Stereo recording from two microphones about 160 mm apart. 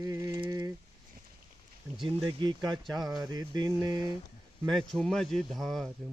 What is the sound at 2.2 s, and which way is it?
Speech, 25° right (ahead or behind).